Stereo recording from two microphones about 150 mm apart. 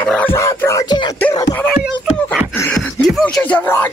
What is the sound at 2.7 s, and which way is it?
Beatboxing, 5° left (ahead or behind).